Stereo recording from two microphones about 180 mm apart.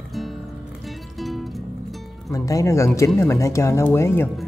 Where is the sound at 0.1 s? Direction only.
Centre (ahead or behind).